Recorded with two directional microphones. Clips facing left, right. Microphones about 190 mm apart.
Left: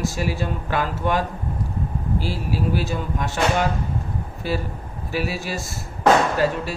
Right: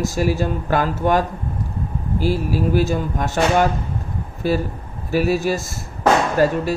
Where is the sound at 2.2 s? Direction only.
45° right (ahead or behind).